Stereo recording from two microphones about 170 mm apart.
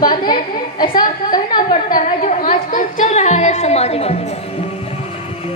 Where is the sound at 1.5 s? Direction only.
55° left (ahead or behind).